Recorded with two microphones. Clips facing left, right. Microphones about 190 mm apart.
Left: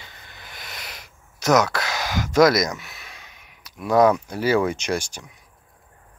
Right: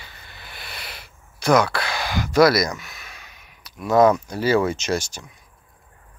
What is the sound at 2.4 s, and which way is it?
Speech, 20° left (ahead or behind).